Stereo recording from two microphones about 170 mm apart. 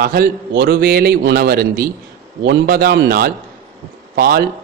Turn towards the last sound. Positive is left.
turn(degrees=-60)  # may be behind; listen again after turning